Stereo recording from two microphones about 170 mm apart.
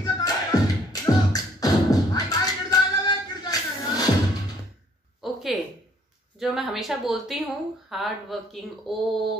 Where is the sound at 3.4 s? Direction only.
25° left (ahead or behind).